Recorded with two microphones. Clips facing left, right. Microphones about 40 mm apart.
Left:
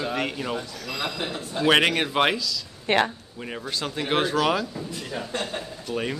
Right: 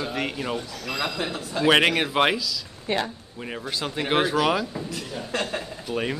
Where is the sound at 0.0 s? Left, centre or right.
Centre.